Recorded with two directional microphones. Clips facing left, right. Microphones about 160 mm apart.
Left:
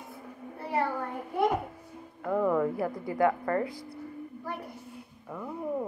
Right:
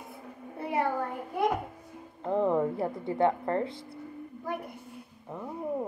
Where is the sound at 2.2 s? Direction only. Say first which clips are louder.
Even; 25° right (ahead or behind).